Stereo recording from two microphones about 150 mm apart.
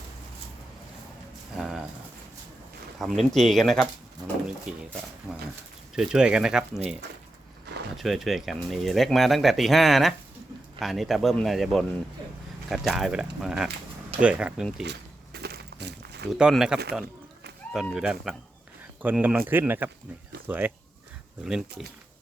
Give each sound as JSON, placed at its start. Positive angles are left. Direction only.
{"t": 1.5, "sound": "a sound", "side_deg": -5}
{"t": 3.0, "sound": "speech", "side_deg": 0}
{"t": 6.0, "sound": "speech", "side_deg": -5}
{"t": 7.9, "sound": "speech", "side_deg": 0}
{"t": 15.3, "sound": "a sound", "side_deg": -90}
{"t": 16.3, "sound": "speech", "side_deg": -5}
{"t": 17.7, "sound": "speech", "side_deg": 5}
{"t": 17.9, "sound": "speech", "side_deg": -5}